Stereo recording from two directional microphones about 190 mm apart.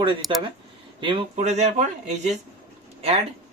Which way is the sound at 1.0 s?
25° right (ahead or behind).